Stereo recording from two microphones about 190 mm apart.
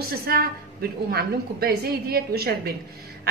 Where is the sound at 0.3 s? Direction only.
55° right (ahead or behind).